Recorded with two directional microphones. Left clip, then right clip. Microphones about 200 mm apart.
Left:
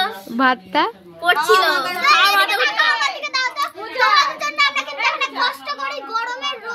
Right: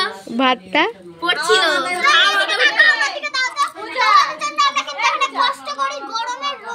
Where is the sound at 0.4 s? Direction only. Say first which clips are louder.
Right 1 dB; 5° left (ahead or behind).